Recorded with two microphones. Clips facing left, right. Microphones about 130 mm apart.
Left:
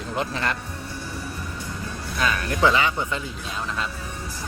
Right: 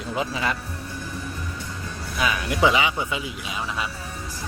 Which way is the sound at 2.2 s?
10° right (ahead or behind).